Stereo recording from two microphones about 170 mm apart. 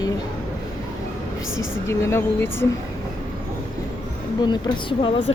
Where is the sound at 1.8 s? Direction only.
15° left (ahead or behind).